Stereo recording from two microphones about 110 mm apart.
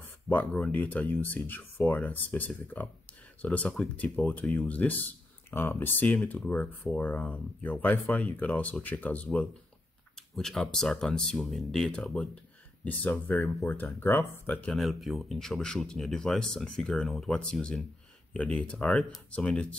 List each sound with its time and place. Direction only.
0.3 s speech: 10° left (ahead or behind)
13.9 s speech: 20° left (ahead or behind)
14.7 s speech: centre (ahead or behind)